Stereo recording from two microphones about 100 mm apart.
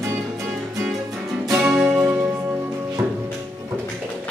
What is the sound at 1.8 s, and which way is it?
Music, 20° right (ahead or behind).